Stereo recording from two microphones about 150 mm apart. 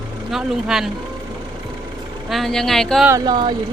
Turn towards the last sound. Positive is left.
turn(degrees=-30)  # may be behind; listen again after turning